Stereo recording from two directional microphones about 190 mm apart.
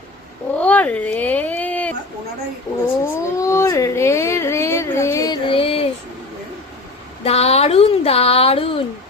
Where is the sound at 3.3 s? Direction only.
15° left (ahead or behind); by 5.9 s 30° left (ahead or behind).